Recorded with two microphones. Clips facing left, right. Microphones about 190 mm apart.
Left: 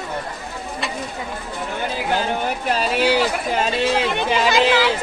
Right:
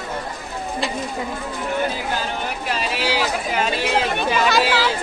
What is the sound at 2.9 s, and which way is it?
Speech, 55° left (ahead or behind).